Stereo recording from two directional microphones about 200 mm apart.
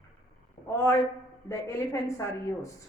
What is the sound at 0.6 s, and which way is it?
A woman's voice, 15° left (ahead or behind).